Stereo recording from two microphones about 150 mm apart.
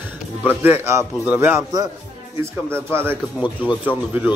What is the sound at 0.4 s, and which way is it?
Speech, 10° right (ahead or behind).